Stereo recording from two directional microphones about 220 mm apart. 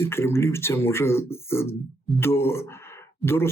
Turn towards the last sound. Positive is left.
turn(degrees=10)  # may be behind; listen again after turning